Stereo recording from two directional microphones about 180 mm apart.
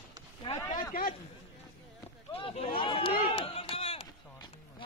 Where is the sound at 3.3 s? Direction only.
30° left (ahead or behind).